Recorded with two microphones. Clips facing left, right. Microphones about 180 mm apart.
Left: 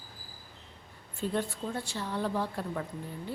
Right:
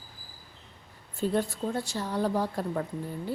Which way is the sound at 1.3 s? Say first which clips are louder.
Right 4 dB; 40° right (ahead or behind).